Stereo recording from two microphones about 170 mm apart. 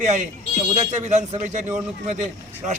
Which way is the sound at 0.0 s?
45° right (ahead or behind).